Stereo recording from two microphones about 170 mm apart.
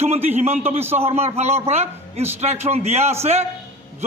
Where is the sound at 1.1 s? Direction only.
35° right (ahead or behind).